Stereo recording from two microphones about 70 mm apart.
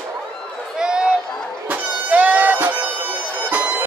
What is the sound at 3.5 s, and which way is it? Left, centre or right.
Bagpipes, right.